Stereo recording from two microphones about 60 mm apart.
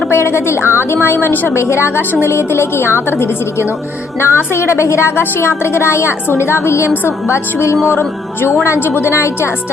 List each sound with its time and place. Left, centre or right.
0.1 s a woman's voice: left
7.9 s music: left
8.6 s a woman's voice: left